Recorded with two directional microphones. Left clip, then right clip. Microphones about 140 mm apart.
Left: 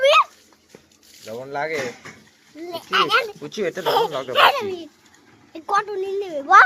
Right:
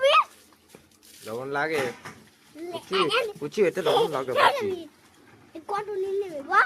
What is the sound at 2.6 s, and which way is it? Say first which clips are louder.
Speech: left 5 dB; 25° left (ahead or behind).